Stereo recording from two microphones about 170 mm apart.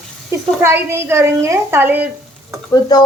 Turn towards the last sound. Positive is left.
turn(degrees=25)  # may be behind; listen again after turning